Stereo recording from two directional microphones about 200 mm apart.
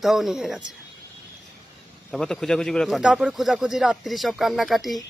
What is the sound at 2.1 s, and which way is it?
Speech, centre (ahead or behind).